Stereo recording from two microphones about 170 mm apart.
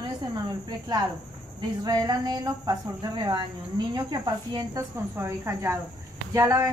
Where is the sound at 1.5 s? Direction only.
20° right (ahead or behind).